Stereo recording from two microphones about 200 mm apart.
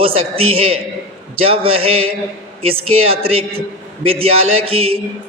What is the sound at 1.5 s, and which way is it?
A man's voice, 30° right (ahead or behind).